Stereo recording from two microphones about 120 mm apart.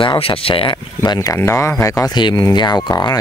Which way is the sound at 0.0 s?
45° left (ahead or behind).